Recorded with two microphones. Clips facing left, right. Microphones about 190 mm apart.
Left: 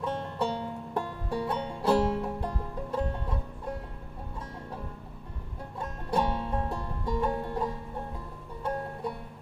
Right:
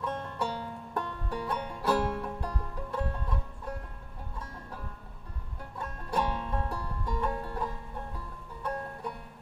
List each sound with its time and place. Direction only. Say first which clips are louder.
0.0 s music: left 3 dB; 25° left (ahead or behind)
5.8 s music: left 3 dB; 25° left (ahead or behind)